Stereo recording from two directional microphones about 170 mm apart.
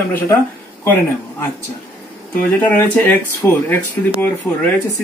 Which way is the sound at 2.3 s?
10° left (ahead or behind).